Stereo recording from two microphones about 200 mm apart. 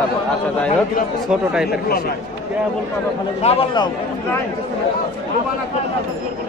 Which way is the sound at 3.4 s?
30° left (ahead or behind).